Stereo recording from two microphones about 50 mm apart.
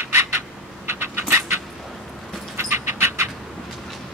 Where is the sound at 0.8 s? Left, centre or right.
Right.